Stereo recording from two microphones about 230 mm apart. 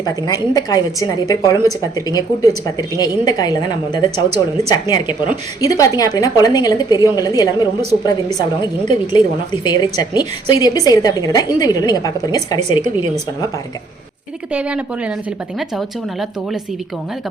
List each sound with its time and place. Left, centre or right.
0.0 s a woman's voice: centre
14.5 s speech: centre